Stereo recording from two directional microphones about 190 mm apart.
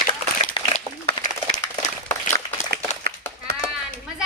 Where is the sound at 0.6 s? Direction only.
25° left (ahead or behind).